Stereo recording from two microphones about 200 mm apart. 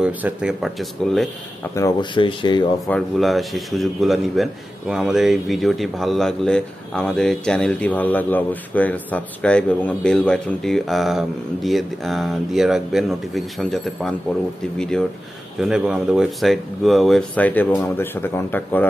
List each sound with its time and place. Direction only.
0.0 s speech: 5° right (ahead or behind)
1.8 s speech: 20° left (ahead or behind)
2.9 s speech: centre (ahead or behind)